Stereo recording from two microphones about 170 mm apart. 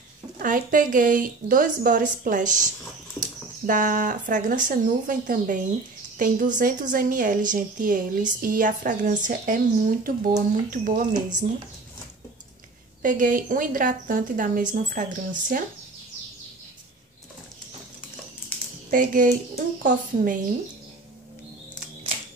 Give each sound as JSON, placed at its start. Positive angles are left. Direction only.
{"t": 0.4, "sound": "a woman's voice", "side_deg": -50}
{"t": 13.0, "sound": "a woman's voice", "side_deg": -50}
{"t": 18.9, "sound": "a woman's voice", "side_deg": -55}